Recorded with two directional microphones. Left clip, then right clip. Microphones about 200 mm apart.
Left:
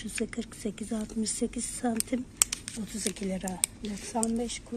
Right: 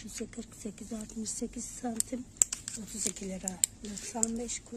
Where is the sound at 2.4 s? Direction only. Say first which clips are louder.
Right 1 dB; 55° right (ahead or behind).